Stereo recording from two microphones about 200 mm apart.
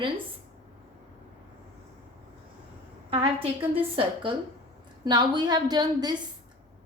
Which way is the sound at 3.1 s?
25° right (ahead or behind).